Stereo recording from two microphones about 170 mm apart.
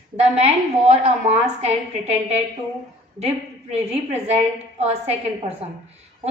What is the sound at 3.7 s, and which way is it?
A woman's voice, 40° right (ahead or behind).